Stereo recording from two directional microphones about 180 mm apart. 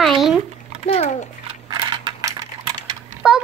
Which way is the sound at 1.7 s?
25° right (ahead or behind).